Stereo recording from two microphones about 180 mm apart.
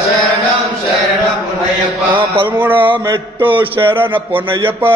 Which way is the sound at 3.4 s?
10° right (ahead or behind).